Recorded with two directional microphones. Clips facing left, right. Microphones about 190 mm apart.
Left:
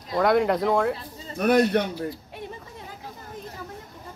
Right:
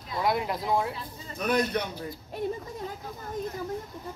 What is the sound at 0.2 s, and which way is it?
Speech, 65° left (ahead or behind).